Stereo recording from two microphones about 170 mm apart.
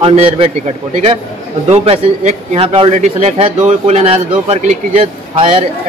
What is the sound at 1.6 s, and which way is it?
A man's voice, 35° right (ahead or behind).